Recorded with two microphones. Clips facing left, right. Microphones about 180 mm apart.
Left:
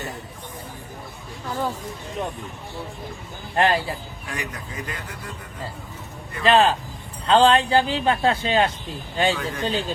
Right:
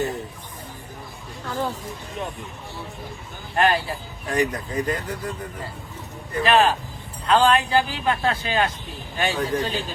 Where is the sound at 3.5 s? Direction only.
20° left (ahead or behind).